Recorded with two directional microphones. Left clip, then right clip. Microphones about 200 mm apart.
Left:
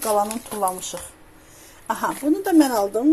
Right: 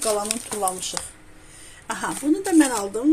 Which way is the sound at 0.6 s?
Centre (ahead or behind).